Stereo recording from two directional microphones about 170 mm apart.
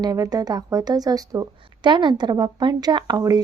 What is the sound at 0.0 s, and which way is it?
Speech, 25° right (ahead or behind).